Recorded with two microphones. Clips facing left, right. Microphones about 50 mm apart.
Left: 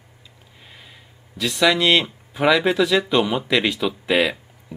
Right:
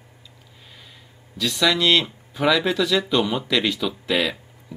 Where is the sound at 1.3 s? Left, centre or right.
Centre.